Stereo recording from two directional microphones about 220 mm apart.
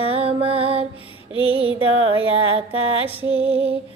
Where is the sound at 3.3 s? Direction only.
25° right (ahead or behind).